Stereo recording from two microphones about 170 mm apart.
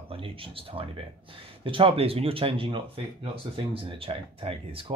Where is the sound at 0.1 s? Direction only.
30° right (ahead or behind).